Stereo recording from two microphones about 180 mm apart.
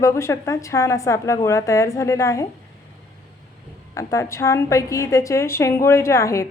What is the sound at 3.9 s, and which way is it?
A woman's voice, 15° left (ahead or behind).